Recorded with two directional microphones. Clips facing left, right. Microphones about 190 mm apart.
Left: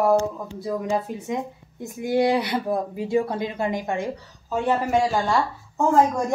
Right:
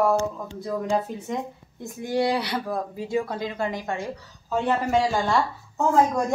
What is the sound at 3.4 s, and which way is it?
Speech, 15° left (ahead or behind).